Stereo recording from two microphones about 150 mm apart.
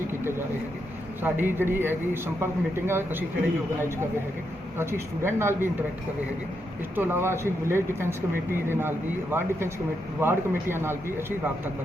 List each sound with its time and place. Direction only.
1.2 s a man's voice: 15° right (ahead or behind)
4.8 s a man's voice: 15° right (ahead or behind)
6.9 s a man's voice: 15° right (ahead or behind)